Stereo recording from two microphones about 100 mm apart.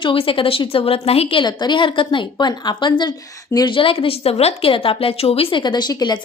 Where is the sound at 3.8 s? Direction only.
65° left (ahead or behind); by 6.1 s 45° left (ahead or behind).